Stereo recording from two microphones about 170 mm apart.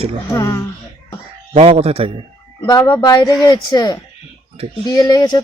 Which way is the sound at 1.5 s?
35° right (ahead or behind).